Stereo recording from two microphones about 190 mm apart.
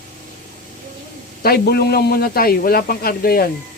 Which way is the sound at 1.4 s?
55° left (ahead or behind).